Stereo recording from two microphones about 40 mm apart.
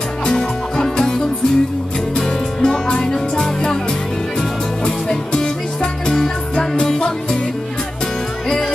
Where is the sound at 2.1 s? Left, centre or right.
Centre.